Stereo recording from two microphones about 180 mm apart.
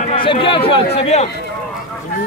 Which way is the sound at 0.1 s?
30° left (ahead or behind).